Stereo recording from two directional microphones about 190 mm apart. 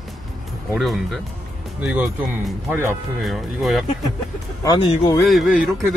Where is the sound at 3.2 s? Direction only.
Centre (ahead or behind).